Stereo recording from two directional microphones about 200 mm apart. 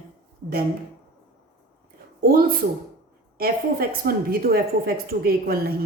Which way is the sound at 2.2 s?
45° right (ahead or behind).